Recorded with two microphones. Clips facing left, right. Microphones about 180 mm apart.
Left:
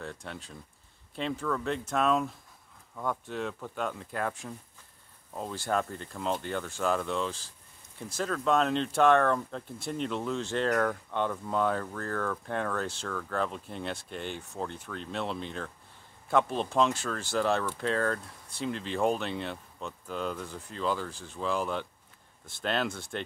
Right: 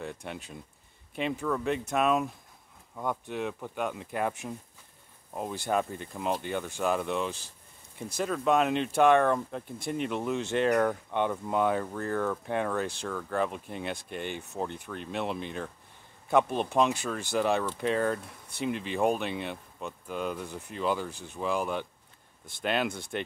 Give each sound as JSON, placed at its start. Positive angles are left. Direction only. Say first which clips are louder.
{"t": 0.0, "sound": "speech", "louder": "right 2 dB", "side_deg": -15}